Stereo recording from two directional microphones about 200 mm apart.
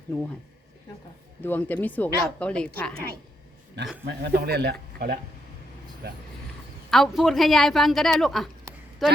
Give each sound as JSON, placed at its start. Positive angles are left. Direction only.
{"t": 1.4, "sound": "speech", "side_deg": 10}
{"t": 4.0, "sound": "speech", "side_deg": -55}
{"t": 6.9, "sound": "a woman's voice", "side_deg": 0}